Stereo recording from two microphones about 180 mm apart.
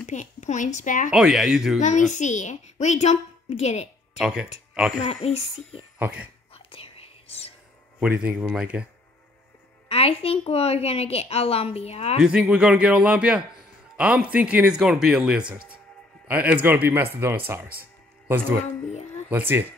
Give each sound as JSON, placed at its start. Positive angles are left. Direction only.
{"t": 0.0, "sound": "a woman's voice", "side_deg": 40}
{"t": 1.1, "sound": "speech", "side_deg": -5}
{"t": 1.8, "sound": "a child's voice", "side_deg": 40}
{"t": 4.2, "sound": "speech", "side_deg": -5}
{"t": 5.0, "sound": "a woman's voice", "side_deg": 35}
{"t": 5.9, "sound": "speech", "side_deg": -10}
{"t": 6.5, "sound": "whispering", "side_deg": 30}
{"t": 8.0, "sound": "speech", "side_deg": -5}
{"t": 9.8, "sound": "a woman's voice", "side_deg": 30}
{"t": 12.2, "sound": "speech", "side_deg": -5}
{"t": 15.5, "sound": "music", "side_deg": -5}
{"t": 16.3, "sound": "speech", "side_deg": -10}
{"t": 19.2, "sound": "speech", "side_deg": -10}